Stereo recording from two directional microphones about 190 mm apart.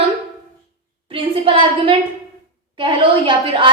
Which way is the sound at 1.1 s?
25° right (ahead or behind).